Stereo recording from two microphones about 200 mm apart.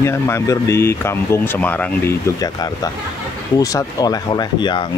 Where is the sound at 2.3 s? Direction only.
20° left (ahead or behind).